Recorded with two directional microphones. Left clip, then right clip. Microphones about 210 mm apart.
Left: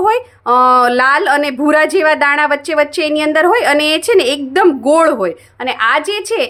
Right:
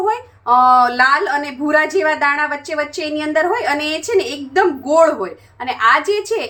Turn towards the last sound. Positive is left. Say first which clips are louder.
# left 2 dB
turn(degrees=35)  # may be behind; listen again after turning